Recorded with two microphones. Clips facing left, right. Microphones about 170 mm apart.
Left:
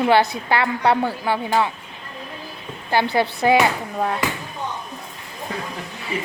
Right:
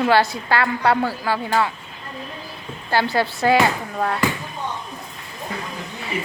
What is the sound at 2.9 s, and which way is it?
A woman's voice, 20° left (ahead or behind).